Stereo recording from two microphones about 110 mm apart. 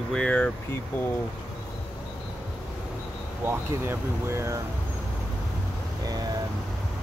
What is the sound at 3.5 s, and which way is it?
Speech, 20° right (ahead or behind).